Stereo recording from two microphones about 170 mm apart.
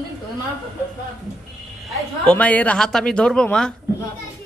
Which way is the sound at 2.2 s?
10° left (ahead or behind).